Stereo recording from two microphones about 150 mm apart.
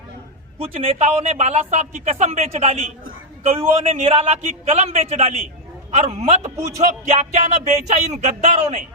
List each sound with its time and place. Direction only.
0.6 s a man's voice: 40° right (ahead or behind)